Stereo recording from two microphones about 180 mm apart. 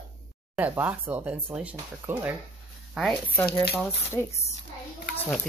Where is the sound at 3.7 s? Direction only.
10° left (ahead or behind).